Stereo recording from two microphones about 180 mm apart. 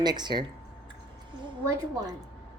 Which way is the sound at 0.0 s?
25° right (ahead or behind).